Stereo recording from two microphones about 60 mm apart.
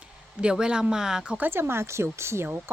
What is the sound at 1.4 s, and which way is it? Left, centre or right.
Speech, right.